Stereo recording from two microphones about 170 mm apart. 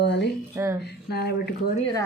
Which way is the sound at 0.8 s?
70° left (ahead or behind).